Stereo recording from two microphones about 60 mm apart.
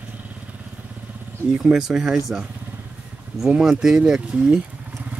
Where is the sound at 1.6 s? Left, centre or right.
Centre.